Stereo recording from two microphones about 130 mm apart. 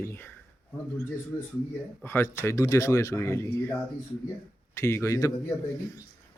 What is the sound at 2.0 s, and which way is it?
Speech, 15° left (ahead or behind).